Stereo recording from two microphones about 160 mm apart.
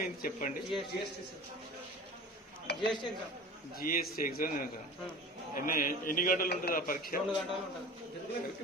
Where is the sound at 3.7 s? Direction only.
65° left (ahead or behind).